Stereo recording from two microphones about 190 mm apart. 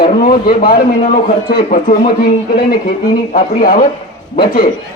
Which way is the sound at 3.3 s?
50° left (ahead or behind).